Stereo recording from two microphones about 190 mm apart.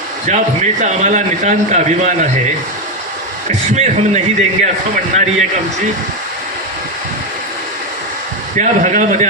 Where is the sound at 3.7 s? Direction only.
35° right (ahead or behind).